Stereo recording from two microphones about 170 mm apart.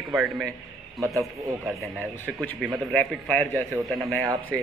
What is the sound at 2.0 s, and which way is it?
Speech, 15° right (ahead or behind).